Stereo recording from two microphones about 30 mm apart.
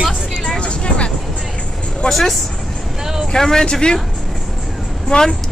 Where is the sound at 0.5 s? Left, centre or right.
Left.